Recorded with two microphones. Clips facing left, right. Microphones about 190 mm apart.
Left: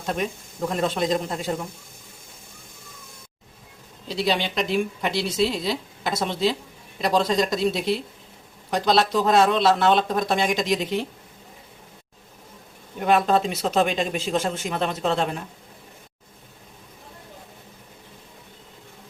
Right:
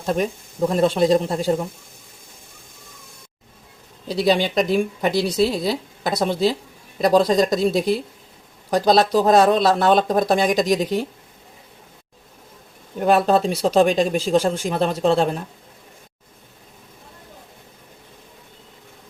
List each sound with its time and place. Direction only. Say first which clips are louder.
0.7 s speech: right 7 dB; 35° right (ahead or behind)
4.1 s speech: right 6 dB; 40° right (ahead or behind)
13.0 s speech: right 3 dB; 35° right (ahead or behind)